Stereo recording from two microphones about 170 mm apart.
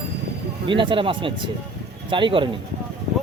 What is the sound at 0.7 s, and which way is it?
Speech, 30° right (ahead or behind).